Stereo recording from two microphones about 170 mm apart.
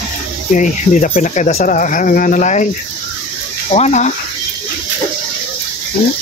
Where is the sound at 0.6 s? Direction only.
50° left (ahead or behind).